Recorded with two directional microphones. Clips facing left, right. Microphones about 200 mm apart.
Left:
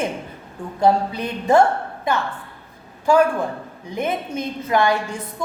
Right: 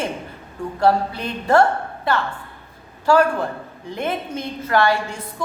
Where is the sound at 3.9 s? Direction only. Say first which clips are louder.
Left 1 dB; 15° left (ahead or behind).